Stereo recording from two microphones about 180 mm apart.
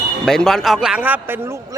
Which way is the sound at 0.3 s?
5° left (ahead or behind).